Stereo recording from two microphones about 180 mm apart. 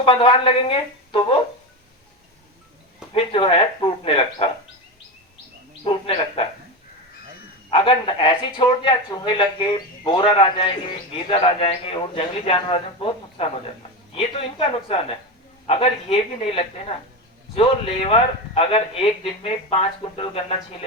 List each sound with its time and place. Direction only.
0.0 s speech: 30° left (ahead or behind)
3.1 s a man's voice: 30° left (ahead or behind)
5.8 s speech: 30° left (ahead or behind)
7.7 s a man's voice: 30° left (ahead or behind)